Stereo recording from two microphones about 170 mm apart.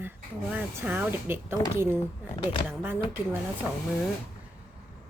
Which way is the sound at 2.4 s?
30° left (ahead or behind).